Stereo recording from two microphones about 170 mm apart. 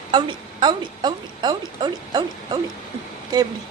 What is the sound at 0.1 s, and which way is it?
A woman's voice, 25° right (ahead or behind).